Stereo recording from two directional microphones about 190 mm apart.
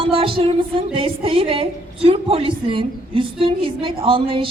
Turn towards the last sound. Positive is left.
turn(degrees=-30)  # may be behind; listen again after turning